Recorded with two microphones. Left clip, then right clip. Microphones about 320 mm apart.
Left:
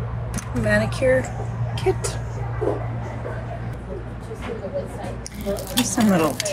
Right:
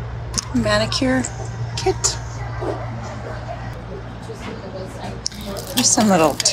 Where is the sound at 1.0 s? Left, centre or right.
Right.